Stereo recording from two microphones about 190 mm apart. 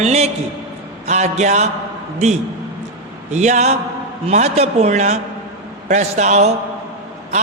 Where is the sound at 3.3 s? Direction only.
40° right (ahead or behind).